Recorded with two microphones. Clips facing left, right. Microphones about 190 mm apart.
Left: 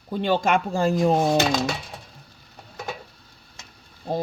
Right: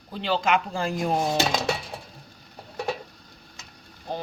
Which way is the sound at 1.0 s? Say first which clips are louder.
Left 4 dB; 25° left (ahead or behind).